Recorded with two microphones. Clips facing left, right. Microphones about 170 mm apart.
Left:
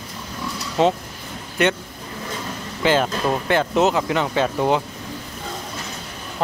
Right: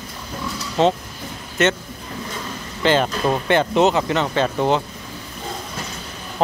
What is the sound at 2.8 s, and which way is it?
Speech, 5° left (ahead or behind).